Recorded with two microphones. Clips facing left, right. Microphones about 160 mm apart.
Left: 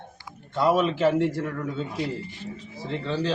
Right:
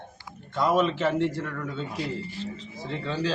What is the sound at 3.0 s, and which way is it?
Speech, centre (ahead or behind).